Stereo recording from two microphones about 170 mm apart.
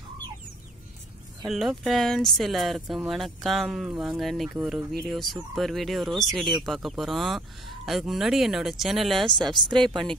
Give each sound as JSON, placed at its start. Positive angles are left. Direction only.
{"t": 1.4, "sound": "speech", "side_deg": 0}
{"t": 9.4, "sound": "speech", "side_deg": -25}
{"t": 9.8, "sound": "speech", "side_deg": 5}